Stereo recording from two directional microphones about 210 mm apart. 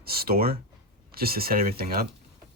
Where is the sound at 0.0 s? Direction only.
45° right (ahead or behind).